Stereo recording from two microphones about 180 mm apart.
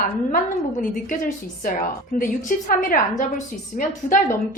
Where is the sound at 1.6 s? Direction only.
50° left (ahead or behind).